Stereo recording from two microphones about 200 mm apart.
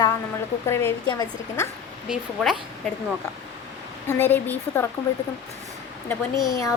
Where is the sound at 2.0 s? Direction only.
5° right (ahead or behind).